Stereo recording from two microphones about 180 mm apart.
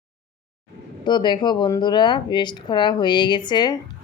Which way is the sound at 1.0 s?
25° left (ahead or behind).